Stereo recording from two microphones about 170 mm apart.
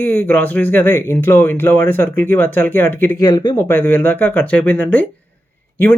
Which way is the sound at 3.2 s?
25° left (ahead or behind).